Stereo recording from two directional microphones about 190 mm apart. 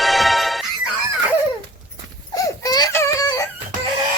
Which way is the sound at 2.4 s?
20° left (ahead or behind).